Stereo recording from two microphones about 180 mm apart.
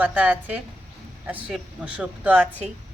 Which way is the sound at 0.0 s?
10° right (ahead or behind).